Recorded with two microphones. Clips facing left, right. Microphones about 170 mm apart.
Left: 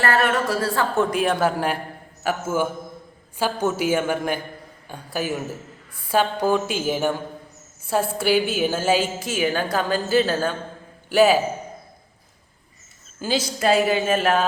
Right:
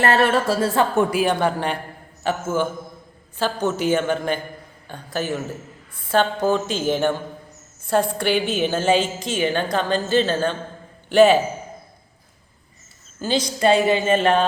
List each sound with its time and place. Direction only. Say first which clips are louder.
0.0 s a woman's voice: right 3 dB; 25° right (ahead or behind)
1.1 s a woman's voice: right 1 dB; centre (ahead or behind)
13.2 s a woman's voice: right 2 dB; 5° left (ahead or behind)